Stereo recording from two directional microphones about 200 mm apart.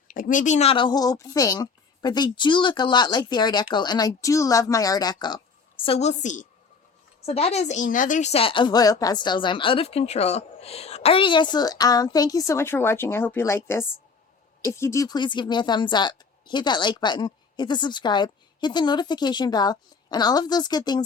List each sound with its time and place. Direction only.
0.1 s a woman's voice: 40° left (ahead or behind); by 21.0 s 20° left (ahead or behind)